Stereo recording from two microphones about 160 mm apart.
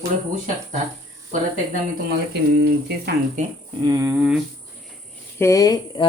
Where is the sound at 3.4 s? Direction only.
50° right (ahead or behind).